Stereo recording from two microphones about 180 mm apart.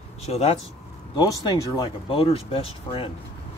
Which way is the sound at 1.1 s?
25° left (ahead or behind).